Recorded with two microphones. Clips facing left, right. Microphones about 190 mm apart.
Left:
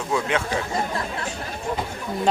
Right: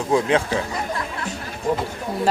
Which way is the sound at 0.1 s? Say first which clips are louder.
Right 5 dB; 30° right (ahead or behind).